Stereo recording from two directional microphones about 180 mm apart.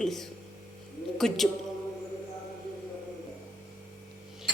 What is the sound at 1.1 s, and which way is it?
Speech, centre (ahead or behind).